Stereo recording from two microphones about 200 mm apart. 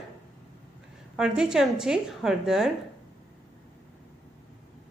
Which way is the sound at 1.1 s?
5° right (ahead or behind).